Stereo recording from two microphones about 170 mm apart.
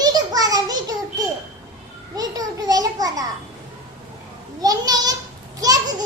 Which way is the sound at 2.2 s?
20° right (ahead or behind).